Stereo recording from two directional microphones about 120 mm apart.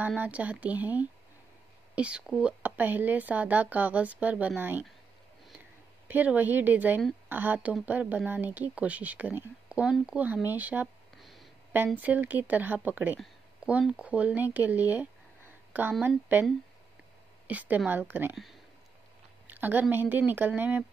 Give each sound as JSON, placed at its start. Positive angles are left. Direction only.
{"t": 0.0, "sound": "speech", "side_deg": -15}
{"t": 6.0, "sound": "speech", "side_deg": -15}
{"t": 11.1, "sound": "a sound", "side_deg": 0}
{"t": 11.7, "sound": "speech", "side_deg": -15}
{"t": 17.5, "sound": "speech", "side_deg": -10}
{"t": 18.3, "sound": "speech", "side_deg": 0}
{"t": 19.4, "sound": "speech", "side_deg": -15}